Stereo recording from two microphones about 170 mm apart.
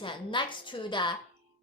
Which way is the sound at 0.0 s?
30° left (ahead or behind).